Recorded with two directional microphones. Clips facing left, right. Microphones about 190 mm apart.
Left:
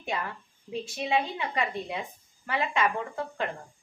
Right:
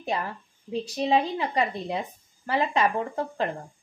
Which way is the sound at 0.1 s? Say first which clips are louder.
Right 3 dB; 35° right (ahead or behind).